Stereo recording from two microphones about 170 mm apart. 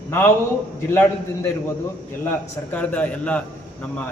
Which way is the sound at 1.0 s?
15° left (ahead or behind).